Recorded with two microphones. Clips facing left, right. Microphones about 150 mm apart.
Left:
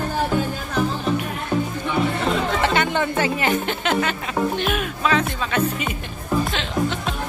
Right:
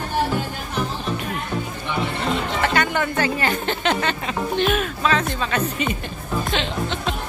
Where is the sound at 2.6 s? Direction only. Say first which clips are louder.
Right 1 dB; 20° left (ahead or behind).